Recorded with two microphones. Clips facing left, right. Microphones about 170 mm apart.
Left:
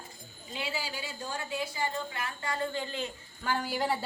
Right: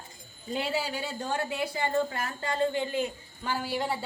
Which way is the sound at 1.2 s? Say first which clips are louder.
Right 4 dB; 65° right (ahead or behind).